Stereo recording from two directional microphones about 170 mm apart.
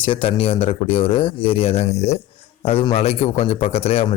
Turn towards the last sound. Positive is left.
turn(degrees=35)  # may be behind; listen again after turning